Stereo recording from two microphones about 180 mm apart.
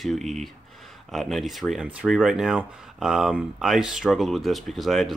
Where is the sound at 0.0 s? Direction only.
Centre (ahead or behind).